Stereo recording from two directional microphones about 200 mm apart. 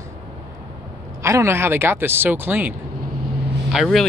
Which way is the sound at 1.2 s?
15° right (ahead or behind).